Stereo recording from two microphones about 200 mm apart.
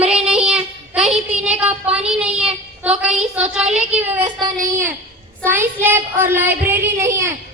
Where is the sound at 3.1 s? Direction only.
5° right (ahead or behind).